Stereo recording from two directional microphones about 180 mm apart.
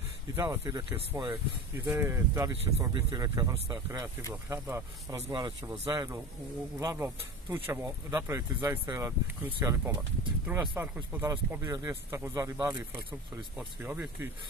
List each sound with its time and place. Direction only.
0.4 s speech: 20° right (ahead or behind)